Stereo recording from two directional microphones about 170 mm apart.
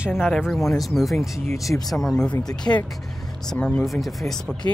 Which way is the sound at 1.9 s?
Centre (ahead or behind).